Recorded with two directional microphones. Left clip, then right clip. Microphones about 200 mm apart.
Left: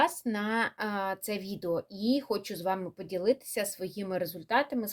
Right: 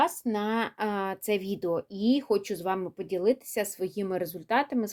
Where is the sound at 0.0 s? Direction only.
30° right (ahead or behind).